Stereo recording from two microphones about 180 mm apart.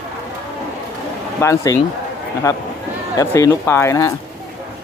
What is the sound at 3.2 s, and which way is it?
Speech, 15° left (ahead or behind).